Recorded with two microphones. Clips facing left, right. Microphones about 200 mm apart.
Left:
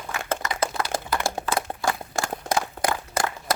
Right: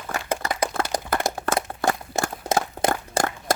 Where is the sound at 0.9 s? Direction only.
15° right (ahead or behind).